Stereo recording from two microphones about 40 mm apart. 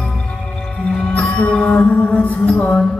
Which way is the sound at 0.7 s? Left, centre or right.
Centre.